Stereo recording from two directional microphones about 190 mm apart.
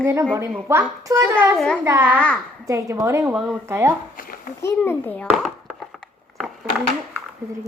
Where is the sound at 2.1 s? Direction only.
5° left (ahead or behind).